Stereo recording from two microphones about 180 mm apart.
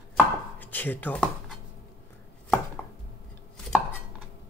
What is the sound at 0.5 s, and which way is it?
Speech, 10° left (ahead or behind).